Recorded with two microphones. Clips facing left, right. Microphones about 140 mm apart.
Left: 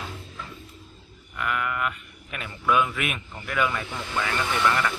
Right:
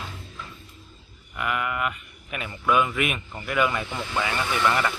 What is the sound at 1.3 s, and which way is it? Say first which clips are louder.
Speech: right 1 dB; 5° right (ahead or behind).